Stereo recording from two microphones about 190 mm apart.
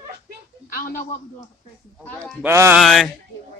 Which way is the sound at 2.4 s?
10° right (ahead or behind).